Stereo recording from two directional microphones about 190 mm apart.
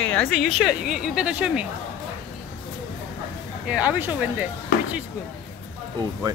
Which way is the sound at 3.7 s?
5° right (ahead or behind).